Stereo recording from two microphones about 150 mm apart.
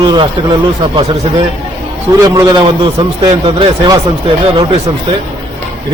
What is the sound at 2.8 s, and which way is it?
A man's voice, 35° right (ahead or behind).